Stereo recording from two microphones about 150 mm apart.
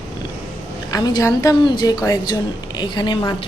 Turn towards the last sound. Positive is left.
turn(degrees=25)  # may be behind; listen again after turning